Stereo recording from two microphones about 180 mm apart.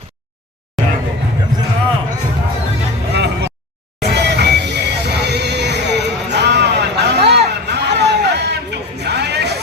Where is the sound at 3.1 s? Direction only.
70° right (ahead or behind).